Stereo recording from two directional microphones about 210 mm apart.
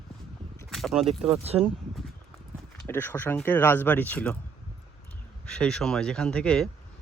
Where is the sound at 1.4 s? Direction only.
30° right (ahead or behind).